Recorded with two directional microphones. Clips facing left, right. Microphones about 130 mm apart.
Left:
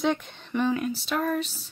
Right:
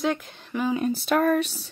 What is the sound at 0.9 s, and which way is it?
Speech, 55° right (ahead or behind).